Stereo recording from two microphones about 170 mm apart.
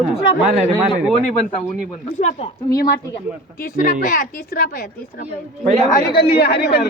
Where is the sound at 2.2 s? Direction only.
45° left (ahead or behind).